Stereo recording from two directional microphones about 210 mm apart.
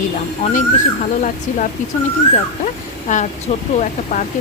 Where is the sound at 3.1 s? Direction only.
35° left (ahead or behind).